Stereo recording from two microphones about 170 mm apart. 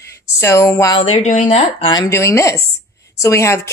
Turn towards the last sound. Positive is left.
turn(degrees=15)  # may be behind; listen again after turning